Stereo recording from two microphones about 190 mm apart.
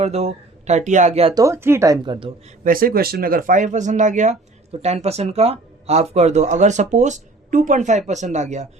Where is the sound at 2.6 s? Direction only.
50° right (ahead or behind).